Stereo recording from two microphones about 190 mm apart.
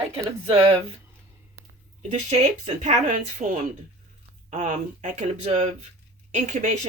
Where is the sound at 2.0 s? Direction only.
35° right (ahead or behind).